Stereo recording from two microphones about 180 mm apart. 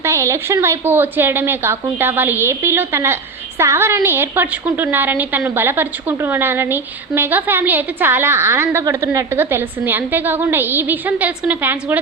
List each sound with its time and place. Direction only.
0.0 s a woman's voice: 15° right (ahead or behind)